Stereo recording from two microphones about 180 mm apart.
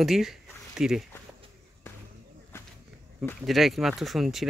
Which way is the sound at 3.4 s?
Centre (ahead or behind).